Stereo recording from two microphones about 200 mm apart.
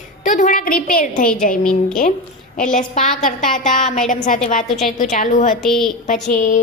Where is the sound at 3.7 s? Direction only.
40° left (ahead or behind).